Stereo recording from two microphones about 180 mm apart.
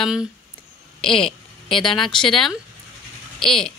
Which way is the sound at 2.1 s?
5° left (ahead or behind).